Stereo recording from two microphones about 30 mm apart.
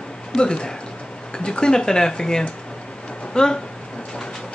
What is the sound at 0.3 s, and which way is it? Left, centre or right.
Speech, left.